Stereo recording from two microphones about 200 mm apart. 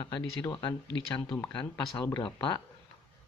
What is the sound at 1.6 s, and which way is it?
Speech, 5° left (ahead or behind).